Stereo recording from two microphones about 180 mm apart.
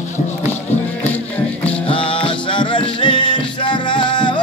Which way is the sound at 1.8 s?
30° left (ahead or behind).